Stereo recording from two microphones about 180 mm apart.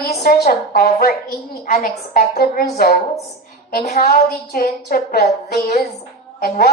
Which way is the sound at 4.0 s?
60° left (ahead or behind).